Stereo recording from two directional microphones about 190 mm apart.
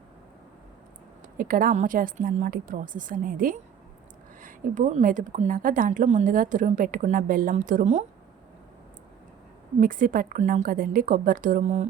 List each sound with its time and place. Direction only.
1.4 s speech: 45° right (ahead or behind)
9.8 s speech: 45° right (ahead or behind)